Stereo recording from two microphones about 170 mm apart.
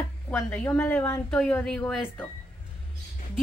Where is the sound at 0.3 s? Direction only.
10° left (ahead or behind).